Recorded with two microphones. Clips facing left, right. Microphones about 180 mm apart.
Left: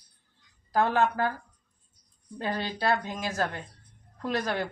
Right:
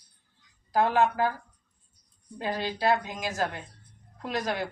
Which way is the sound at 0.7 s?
15° right (ahead or behind).